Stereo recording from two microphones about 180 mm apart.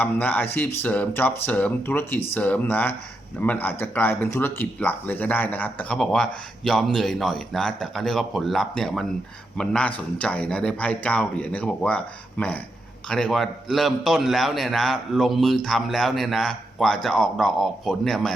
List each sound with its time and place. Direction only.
0.0 s a man's voice: 10° left (ahead or behind)